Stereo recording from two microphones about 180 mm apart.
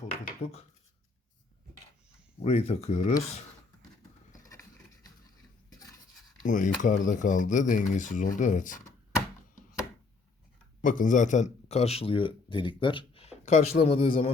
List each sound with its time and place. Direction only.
0.0 s a sound: 35° left (ahead or behind)
2.4 s speech: 35° left (ahead or behind)
4.3 s vehicle: 20° left (ahead or behind)
6.4 s speech: 45° left (ahead or behind)
10.8 s speech: 45° left (ahead or behind)